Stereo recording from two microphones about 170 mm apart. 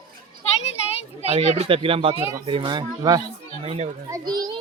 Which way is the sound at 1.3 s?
35° right (ahead or behind).